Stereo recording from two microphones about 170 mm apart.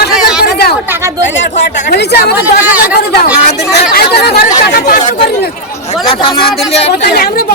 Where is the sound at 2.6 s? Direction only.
10° right (ahead or behind).